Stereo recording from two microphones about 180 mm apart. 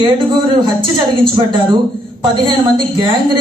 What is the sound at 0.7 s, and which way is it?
A woman's voice, 30° right (ahead or behind).